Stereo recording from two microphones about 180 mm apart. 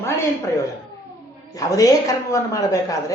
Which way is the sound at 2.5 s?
20° left (ahead or behind).